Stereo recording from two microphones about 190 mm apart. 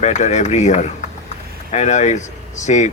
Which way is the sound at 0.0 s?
40° left (ahead or behind).